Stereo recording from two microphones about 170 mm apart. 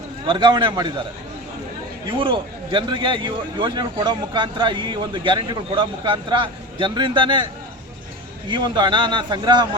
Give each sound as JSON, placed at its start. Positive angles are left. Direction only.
{"t": 0.3, "sound": "a man's voice", "side_deg": -30}
{"t": 2.0, "sound": "a man's voice", "side_deg": -30}
{"t": 8.4, "sound": "a man's voice", "side_deg": -25}